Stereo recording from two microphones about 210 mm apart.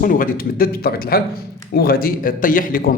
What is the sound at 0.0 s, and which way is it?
Speech, 40° left (ahead or behind).